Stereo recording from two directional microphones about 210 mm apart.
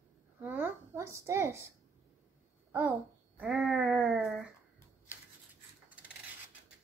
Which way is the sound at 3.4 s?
5° right (ahead or behind).